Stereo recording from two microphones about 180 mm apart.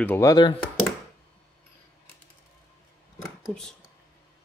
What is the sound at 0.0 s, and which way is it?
Speech, 15° left (ahead or behind).